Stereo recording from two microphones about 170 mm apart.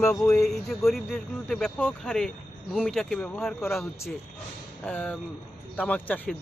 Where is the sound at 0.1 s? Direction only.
5° left (ahead or behind).